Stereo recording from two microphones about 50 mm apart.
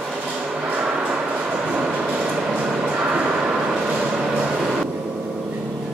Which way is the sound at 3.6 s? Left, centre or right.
Right.